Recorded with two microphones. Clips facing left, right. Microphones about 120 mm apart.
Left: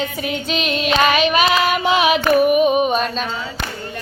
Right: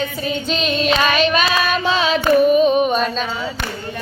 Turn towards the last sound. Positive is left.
turn(degrees=5)  # may be behind; listen again after turning